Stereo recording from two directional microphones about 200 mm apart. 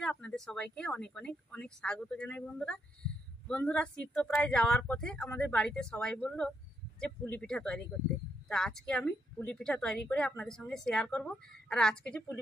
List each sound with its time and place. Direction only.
0.0 s a woman's voice: 5° left (ahead or behind)